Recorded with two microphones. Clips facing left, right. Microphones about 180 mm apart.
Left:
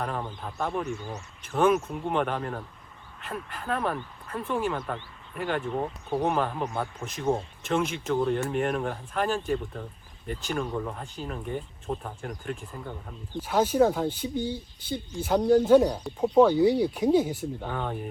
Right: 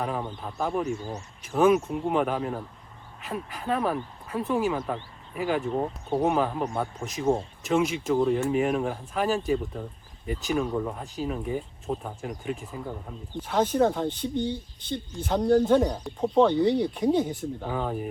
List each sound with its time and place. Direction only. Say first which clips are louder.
0.0 s speech: right 2 dB; 5° right (ahead or behind)
0.9 s speech: right 3 dB; 35° right (ahead or behind)
1.5 s speech: right 2 dB; centre (ahead or behind)
5.7 s speech: right 2 dB; 30° right (ahead or behind)
6.2 s speech: right 2 dB; 5° right (ahead or behind)